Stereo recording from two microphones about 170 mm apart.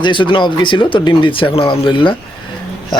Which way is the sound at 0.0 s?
30° left (ahead or behind).